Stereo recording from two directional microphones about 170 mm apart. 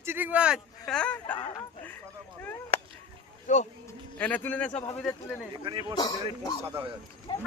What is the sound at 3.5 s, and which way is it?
Speech, 45° left (ahead or behind).